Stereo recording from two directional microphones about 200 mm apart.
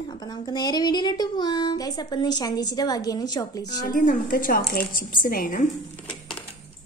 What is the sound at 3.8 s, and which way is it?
A woman's voice, 45° left (ahead or behind).